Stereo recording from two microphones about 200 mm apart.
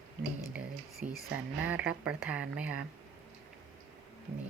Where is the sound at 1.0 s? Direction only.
40° right (ahead or behind).